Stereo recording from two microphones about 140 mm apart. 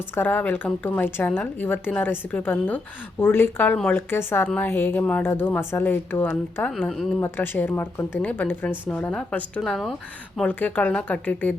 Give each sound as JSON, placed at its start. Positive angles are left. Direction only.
{"t": 0.1, "sound": "a woman's voice", "side_deg": 15}